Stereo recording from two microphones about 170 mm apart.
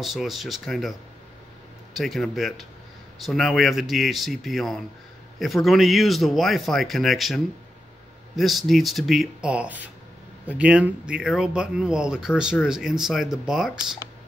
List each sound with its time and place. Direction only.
0.0 s speech: centre (ahead or behind)
2.0 s speech: centre (ahead or behind)